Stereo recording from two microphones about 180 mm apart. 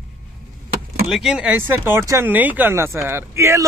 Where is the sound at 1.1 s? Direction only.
Centre (ahead or behind).